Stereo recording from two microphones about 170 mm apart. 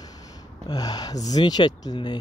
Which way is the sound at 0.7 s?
20° left (ahead or behind).